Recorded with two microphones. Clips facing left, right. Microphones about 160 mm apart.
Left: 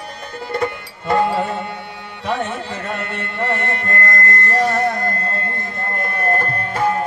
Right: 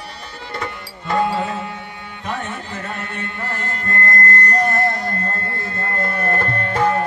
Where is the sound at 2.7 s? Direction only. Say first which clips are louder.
Left 3 dB; 65° left (ahead or behind).